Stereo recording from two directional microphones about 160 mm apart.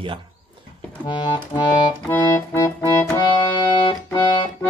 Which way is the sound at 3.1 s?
30° left (ahead or behind).